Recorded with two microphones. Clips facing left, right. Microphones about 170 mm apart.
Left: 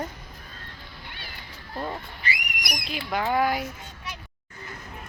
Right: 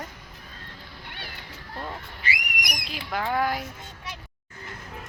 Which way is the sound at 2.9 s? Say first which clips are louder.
Left 2 dB; 5° left (ahead or behind).